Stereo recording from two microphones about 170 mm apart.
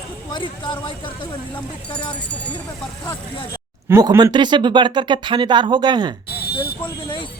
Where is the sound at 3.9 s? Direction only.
20° right (ahead or behind).